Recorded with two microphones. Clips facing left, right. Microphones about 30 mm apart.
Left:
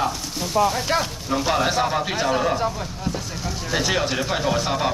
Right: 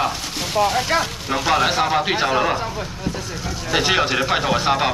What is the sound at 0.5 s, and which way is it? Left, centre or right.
Speech, right.